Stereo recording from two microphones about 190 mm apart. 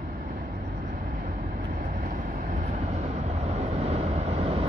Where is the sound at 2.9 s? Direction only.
35° right (ahead or behind).